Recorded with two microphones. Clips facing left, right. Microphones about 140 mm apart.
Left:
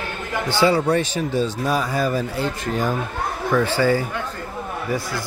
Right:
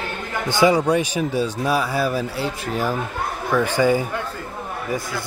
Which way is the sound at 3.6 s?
15° right (ahead or behind).